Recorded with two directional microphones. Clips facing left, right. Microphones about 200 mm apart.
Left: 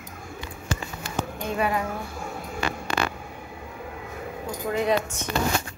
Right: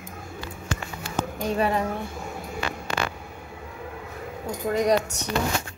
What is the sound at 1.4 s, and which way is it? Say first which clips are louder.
Speech: right 2 dB; 35° right (ahead or behind).